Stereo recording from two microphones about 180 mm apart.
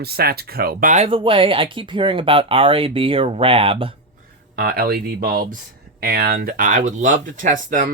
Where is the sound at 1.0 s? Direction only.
30° right (ahead or behind).